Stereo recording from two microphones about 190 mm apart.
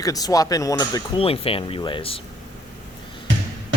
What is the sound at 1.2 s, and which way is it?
Speech, 30° left (ahead or behind).